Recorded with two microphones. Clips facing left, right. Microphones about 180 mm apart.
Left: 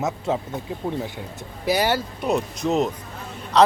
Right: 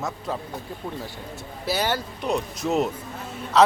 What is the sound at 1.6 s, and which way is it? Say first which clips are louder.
Speech: left 4 dB; 10° left (ahead or behind).